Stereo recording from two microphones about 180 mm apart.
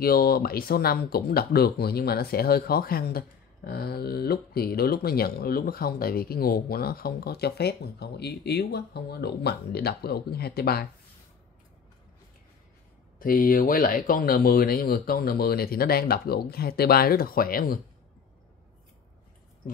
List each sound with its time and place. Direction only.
0.0 s speech: 55° left (ahead or behind)
13.2 s speech: 50° left (ahead or behind)